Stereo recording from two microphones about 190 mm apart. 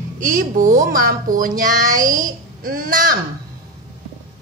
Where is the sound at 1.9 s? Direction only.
20° right (ahead or behind).